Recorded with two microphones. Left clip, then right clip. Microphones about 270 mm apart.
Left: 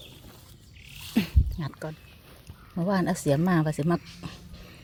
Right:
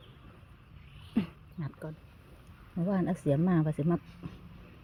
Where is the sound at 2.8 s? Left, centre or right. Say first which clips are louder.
Left 6 dB; centre.